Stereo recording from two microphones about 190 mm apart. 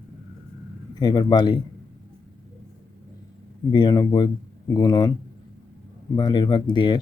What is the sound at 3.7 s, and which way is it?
Speech, 20° left (ahead or behind).